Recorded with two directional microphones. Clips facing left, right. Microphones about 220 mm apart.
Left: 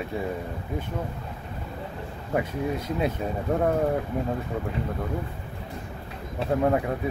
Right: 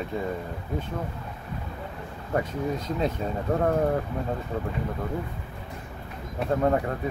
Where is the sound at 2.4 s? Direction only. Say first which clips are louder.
Left 1 dB; 10° left (ahead or behind).